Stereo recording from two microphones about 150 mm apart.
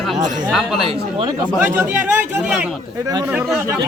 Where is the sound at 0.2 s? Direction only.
55° right (ahead or behind).